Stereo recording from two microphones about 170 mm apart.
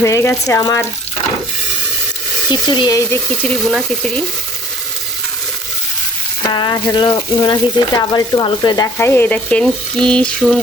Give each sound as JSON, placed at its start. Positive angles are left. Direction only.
{"t": 0.0, "sound": "speech", "side_deg": 15}
{"t": 2.5, "sound": "speech", "side_deg": 25}
{"t": 6.4, "sound": "frying", "side_deg": 25}
{"t": 6.9, "sound": "speech", "side_deg": 25}